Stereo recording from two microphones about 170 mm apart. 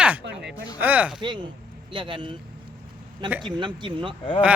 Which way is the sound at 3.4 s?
30° right (ahead or behind).